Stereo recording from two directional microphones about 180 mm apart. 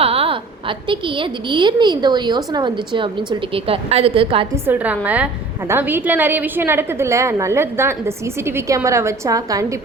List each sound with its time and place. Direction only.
0.0 s a woman's voice: 30° right (ahead or behind)
4.5 s a woman's voice: 10° right (ahead or behind)